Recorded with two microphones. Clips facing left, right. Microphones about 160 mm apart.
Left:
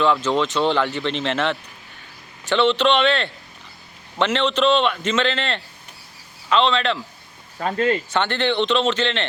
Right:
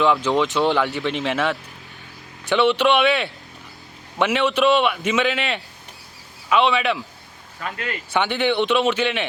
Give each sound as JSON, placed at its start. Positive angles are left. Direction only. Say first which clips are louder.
{"t": 0.0, "sound": "a man's voice", "louder": "right 1 dB", "side_deg": -15}
{"t": 7.6, "sound": "speech", "louder": "left 9 dB", "side_deg": 35}
{"t": 8.1, "sound": "a man's voice", "louder": "right 1 dB", "side_deg": -10}